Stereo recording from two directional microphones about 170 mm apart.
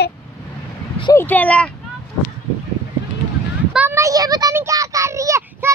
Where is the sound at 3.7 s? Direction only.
10° right (ahead or behind).